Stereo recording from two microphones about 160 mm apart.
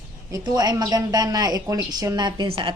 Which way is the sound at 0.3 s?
25° right (ahead or behind).